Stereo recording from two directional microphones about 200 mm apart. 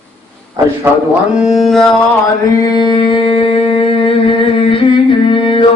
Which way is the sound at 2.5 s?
20° left (ahead or behind).